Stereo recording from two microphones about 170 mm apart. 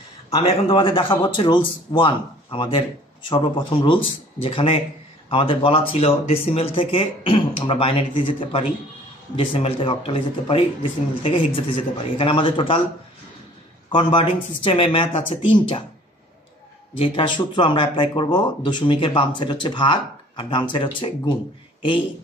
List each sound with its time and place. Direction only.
0.3 s a man's voice: 35° left (ahead or behind)
13.8 s a man's voice: 30° left (ahead or behind)
16.9 s speech: 30° left (ahead or behind)